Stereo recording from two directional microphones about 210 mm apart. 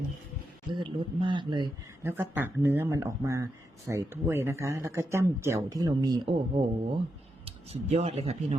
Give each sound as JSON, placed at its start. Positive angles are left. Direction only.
{"t": 0.7, "sound": "speech", "side_deg": -25}
{"t": 2.0, "sound": "speech", "side_deg": -10}